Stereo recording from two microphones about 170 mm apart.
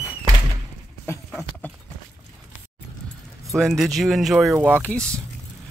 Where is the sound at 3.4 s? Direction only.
Centre (ahead or behind).